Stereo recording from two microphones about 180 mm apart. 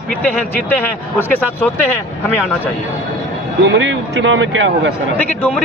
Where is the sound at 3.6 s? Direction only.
85° right.